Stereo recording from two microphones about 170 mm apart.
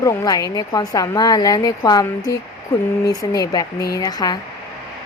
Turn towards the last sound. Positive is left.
turn(degrees=25)  # may be behind; listen again after turning